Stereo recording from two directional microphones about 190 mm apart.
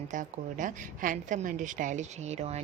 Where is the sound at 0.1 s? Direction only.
40° right (ahead or behind).